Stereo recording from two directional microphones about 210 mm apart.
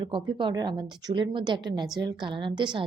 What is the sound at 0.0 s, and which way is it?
A woman's voice, 25° right (ahead or behind).